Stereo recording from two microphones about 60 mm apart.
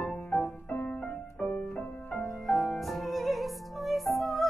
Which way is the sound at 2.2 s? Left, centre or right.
Centre.